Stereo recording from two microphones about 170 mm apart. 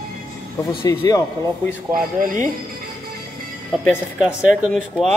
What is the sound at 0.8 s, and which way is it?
Speech, 20° left (ahead or behind).